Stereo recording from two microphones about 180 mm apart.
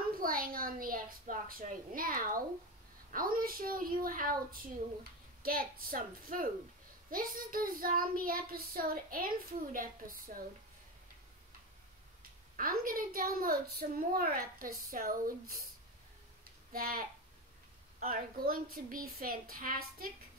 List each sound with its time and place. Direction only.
0.1 s a sound: 50° right (ahead or behind)
3.1 s a woman's voice: 50° right (ahead or behind)
12.2 s a woman's voice: 50° right (ahead or behind)
16.7 s a woman's voice: 55° right (ahead or behind)